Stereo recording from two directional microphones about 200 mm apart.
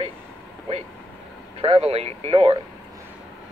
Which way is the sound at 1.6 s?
30° right (ahead or behind).